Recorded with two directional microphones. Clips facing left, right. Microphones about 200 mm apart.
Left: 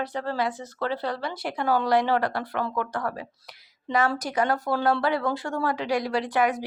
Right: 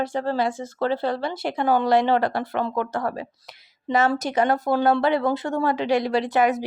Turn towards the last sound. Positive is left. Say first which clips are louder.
# right 4 dB
turn(degrees=-25)  # may be behind; listen again after turning